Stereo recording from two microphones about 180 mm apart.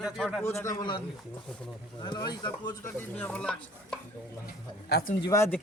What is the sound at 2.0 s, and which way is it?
Speech, 25° left (ahead or behind).